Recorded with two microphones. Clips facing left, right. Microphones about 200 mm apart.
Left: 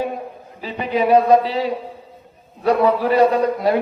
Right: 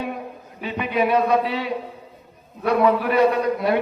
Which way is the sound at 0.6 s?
30° left (ahead or behind).